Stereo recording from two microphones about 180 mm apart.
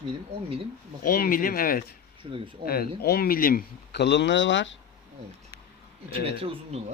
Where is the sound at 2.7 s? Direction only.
60° left (ahead or behind); by 4.7 s 90° left.